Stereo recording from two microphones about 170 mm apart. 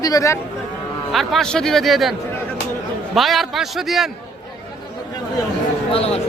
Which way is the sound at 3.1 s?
Centre (ahead or behind).